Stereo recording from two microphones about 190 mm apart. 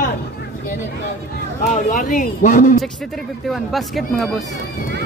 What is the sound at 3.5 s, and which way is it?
Speech, centre (ahead or behind).